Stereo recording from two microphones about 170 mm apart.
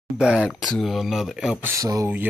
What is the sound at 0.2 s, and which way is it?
Speech, 5° right (ahead or behind).